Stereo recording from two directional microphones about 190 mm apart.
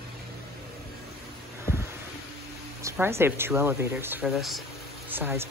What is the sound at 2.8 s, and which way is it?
Speech, 10° right (ahead or behind).